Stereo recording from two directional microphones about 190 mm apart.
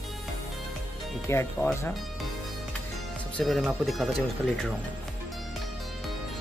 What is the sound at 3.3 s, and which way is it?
Speech, centre (ahead or behind).